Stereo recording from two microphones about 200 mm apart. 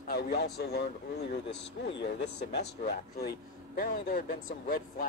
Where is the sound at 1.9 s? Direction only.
60° left (ahead or behind).